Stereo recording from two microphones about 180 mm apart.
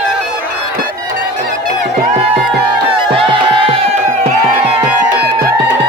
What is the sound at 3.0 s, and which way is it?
Music, 30° right (ahead or behind).